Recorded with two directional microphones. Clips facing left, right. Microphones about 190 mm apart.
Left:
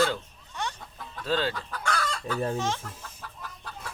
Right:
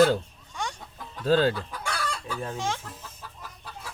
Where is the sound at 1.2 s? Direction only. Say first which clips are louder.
Right 6 dB; 40° right (ahead or behind).